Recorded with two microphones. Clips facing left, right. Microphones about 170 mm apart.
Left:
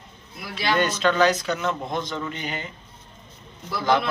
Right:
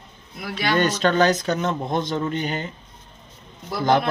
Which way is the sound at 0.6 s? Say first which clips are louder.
Right 2 dB; 40° right (ahead or behind).